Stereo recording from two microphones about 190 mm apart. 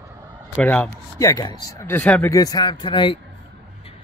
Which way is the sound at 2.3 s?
20° left (ahead or behind).